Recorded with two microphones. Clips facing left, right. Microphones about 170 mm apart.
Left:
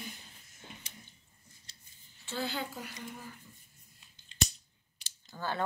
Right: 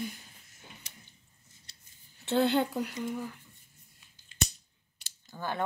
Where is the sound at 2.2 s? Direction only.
65° right (ahead or behind).